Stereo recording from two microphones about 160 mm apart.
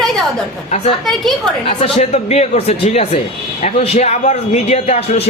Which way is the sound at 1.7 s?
40° left (ahead or behind).